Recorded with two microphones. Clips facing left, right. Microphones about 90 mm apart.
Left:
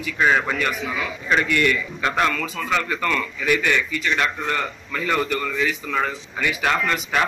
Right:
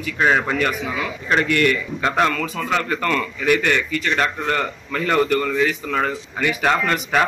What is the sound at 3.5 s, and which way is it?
A man's voice, 55° right (ahead or behind).